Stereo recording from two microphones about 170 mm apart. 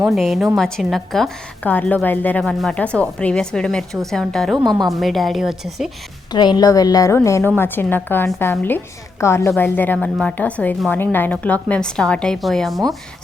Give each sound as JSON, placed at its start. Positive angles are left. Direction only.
{"t": 0.1, "sound": "a woman's voice", "side_deg": 0}
{"t": 4.5, "sound": "a woman's voice", "side_deg": -25}
{"t": 4.9, "sound": "a woman's voice", "side_deg": 0}
{"t": 6.3, "sound": "a woman's voice", "side_deg": 25}